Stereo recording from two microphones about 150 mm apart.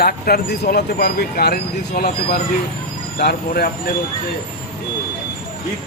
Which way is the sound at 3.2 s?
90° left.